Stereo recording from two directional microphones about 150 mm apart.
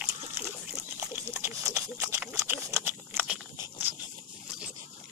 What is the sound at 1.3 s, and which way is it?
Pig, 15° right (ahead or behind).